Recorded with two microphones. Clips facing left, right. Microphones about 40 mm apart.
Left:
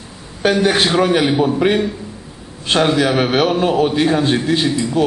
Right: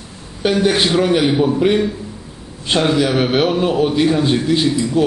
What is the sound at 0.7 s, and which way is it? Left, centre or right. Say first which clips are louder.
Speech: right 1 dB; centre.